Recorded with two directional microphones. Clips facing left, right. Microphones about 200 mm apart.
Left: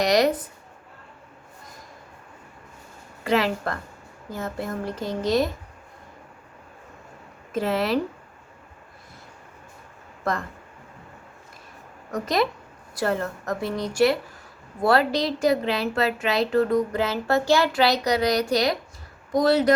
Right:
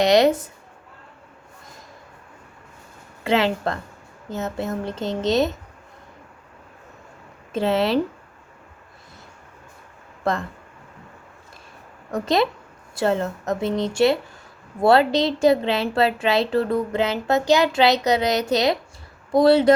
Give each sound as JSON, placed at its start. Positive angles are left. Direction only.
{"t": 0.0, "sound": "a woman's voice", "side_deg": -25}
{"t": 3.2, "sound": "a woman's voice", "side_deg": -25}
{"t": 7.5, "sound": "a woman's voice", "side_deg": -25}
{"t": 12.1, "sound": "a woman's voice", "side_deg": -25}